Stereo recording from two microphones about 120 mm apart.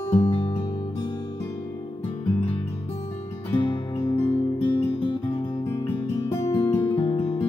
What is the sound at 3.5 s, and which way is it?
Music, 45° left (ahead or behind).